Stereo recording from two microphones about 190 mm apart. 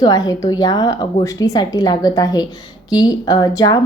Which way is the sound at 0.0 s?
20° left (ahead or behind).